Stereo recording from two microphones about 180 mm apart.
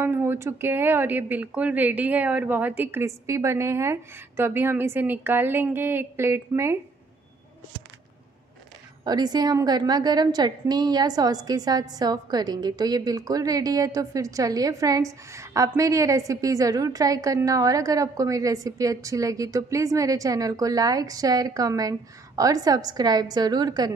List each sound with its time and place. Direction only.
0.0 s speech: 15° right (ahead or behind)
9.0 s a woman's voice: 20° right (ahead or behind)